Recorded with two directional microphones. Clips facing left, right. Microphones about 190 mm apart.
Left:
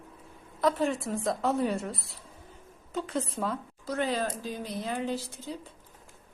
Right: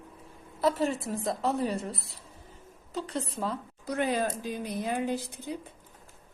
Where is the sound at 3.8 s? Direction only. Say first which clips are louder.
Right 1 dB; 15° right (ahead or behind).